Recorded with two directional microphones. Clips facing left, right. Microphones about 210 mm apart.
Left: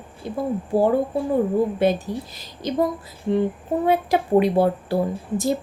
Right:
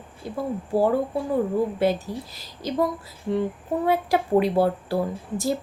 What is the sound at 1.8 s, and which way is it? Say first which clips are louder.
Speech: left 2 dB; 20° left (ahead or behind).